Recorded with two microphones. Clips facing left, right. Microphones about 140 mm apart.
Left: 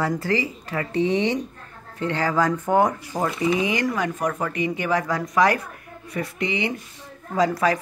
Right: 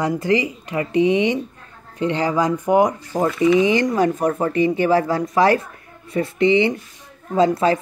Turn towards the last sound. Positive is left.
turn(degrees=-25)  # may be behind; listen again after turning